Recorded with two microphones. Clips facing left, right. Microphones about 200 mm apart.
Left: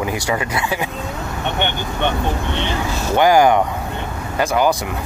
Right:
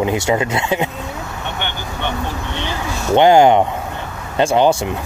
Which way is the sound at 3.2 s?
25° right (ahead or behind).